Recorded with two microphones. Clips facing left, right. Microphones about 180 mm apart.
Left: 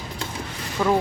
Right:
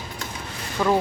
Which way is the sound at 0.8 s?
Centre (ahead or behind).